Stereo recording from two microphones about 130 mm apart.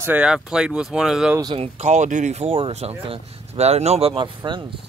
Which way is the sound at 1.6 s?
60° right (ahead or behind).